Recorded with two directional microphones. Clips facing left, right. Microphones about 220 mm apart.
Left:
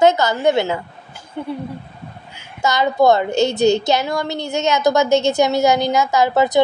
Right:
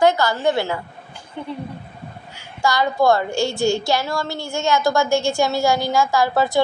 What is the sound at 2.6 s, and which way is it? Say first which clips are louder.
A woman's voice: left 3 dB; 20° left (ahead or behind).